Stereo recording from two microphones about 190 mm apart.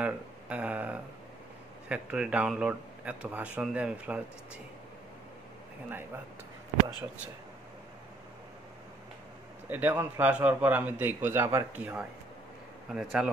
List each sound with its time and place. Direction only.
0.0 s a man's voice: 5° right (ahead or behind)
9.7 s a man's voice: 10° right (ahead or behind)